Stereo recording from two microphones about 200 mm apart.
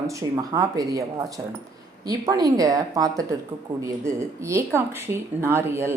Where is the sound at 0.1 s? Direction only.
15° right (ahead or behind).